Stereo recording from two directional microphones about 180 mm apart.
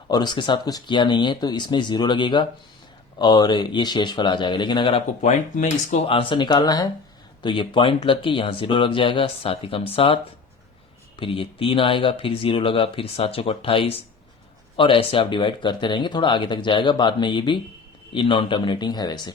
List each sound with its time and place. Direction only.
0.1 s speech: 25° left (ahead or behind)
11.2 s speech: 30° left (ahead or behind)